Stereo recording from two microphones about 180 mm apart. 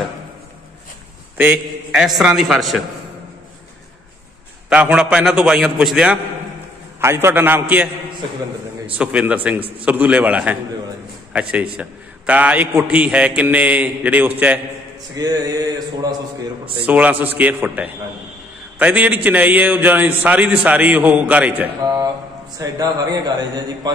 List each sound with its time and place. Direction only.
1.4 s a man's voice: 5° right (ahead or behind)
4.6 s a man's voice: 5° right (ahead or behind)
8.9 s a man's voice: 5° right (ahead or behind)
11.7 s a man's voice: 10° right (ahead or behind)
15.1 s mantra: 20° right (ahead or behind)
16.8 s a man's voice: 10° right (ahead or behind)
22.6 s mantra: 20° right (ahead or behind)